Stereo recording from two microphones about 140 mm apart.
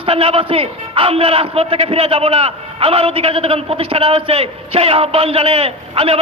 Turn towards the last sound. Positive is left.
turn(degrees=-45)  # may be behind; listen again after turning